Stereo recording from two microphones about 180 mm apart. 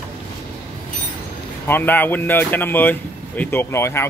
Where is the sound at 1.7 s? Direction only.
10° left (ahead or behind).